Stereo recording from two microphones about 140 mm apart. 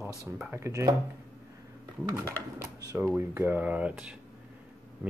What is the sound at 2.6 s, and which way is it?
Speech, 25° right (ahead or behind).